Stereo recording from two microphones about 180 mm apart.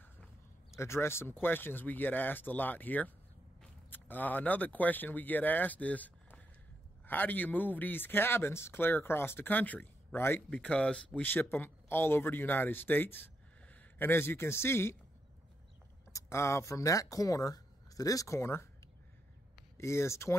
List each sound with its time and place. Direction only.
0.7 s speech: 15° left (ahead or behind)
16.1 s speech: 15° left (ahead or behind)